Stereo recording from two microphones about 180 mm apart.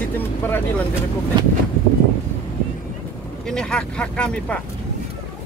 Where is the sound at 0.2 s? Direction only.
10° left (ahead or behind).